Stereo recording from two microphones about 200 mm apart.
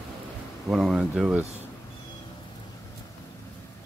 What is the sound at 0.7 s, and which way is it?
Speech, centre (ahead or behind).